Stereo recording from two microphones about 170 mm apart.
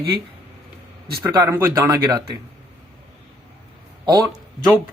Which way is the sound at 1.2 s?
15° right (ahead or behind).